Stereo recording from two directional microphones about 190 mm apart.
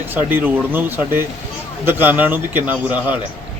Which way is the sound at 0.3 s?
10° right (ahead or behind).